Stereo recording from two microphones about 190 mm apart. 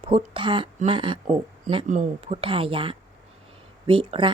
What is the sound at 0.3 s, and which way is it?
Speech, 25° right (ahead or behind).